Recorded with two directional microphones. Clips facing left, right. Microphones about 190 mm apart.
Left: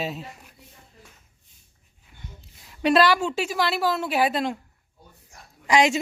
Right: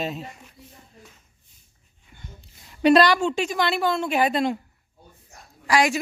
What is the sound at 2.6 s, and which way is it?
Speech, centre (ahead or behind).